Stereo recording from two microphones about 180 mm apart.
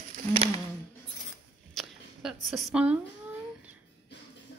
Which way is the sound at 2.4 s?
Centre (ahead or behind).